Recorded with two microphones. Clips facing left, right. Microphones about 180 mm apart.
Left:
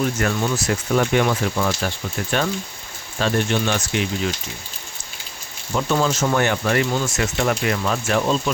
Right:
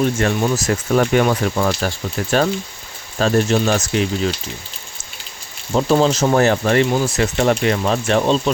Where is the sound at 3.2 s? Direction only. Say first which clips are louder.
Right 5 dB; 40° right (ahead or behind).